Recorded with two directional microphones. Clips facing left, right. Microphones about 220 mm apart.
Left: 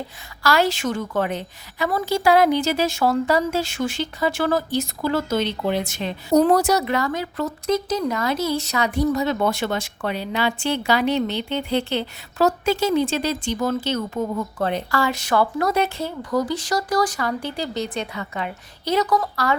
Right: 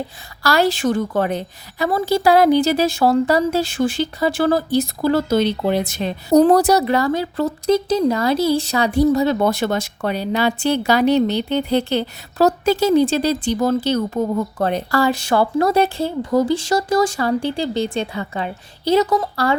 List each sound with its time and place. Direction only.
0.4 s a woman's voice: 35° right (ahead or behind)